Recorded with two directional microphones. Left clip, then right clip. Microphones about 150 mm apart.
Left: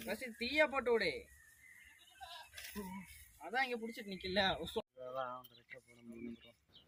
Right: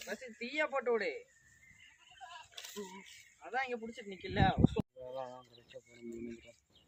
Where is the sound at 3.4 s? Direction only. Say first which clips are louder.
Even; 40° left (ahead or behind).